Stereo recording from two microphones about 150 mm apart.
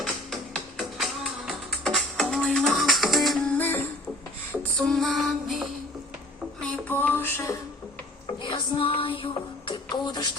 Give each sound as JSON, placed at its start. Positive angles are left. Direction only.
{"t": 0.0, "sound": "music", "side_deg": 0}
{"t": 6.6, "sound": "a sound", "side_deg": 5}
{"t": 8.4, "sound": "music", "side_deg": 35}